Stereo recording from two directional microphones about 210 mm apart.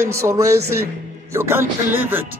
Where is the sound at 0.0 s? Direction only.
15° right (ahead or behind).